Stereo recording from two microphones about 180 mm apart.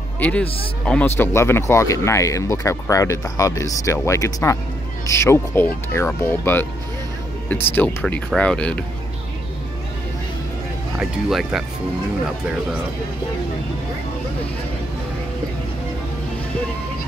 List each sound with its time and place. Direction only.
0.2 s speech: 10° left (ahead or behind)
11.0 s speech: centre (ahead or behind)